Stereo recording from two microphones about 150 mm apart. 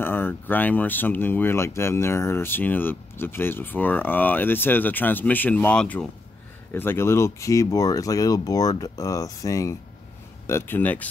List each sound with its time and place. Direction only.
0.0 s speech: 15° left (ahead or behind)